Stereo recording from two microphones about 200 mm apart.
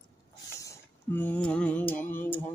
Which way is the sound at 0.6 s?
10° left (ahead or behind).